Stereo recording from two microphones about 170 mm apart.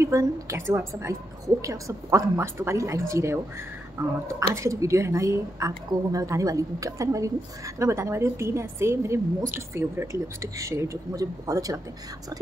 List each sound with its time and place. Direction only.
0.0 s a woman's voice: 20° right (ahead or behind)